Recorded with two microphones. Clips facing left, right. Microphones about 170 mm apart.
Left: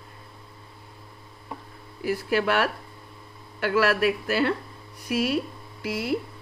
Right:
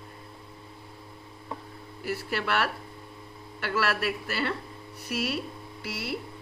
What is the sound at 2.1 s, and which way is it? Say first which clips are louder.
Speech: left 6 dB; 45° left (ahead or behind).